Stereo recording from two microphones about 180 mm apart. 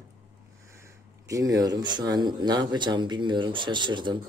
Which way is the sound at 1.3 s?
20° right (ahead or behind).